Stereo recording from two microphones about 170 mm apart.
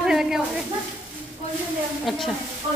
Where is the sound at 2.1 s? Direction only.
Centre (ahead or behind).